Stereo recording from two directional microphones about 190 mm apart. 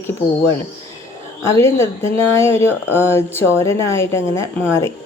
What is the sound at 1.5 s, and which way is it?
Speech, 15° left (ahead or behind).